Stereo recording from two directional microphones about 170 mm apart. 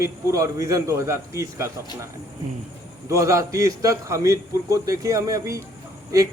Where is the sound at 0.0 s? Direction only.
15° right (ahead or behind).